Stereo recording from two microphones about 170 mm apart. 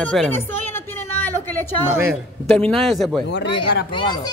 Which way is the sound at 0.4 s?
15° left (ahead or behind).